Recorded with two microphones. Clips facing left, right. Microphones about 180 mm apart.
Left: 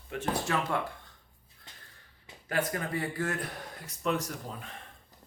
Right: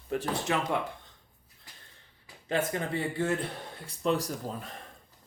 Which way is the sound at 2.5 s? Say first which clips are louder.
Right 2 dB; 25° right (ahead or behind).